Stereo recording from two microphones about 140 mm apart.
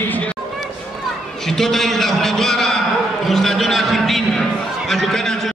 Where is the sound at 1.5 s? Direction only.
5° left (ahead or behind).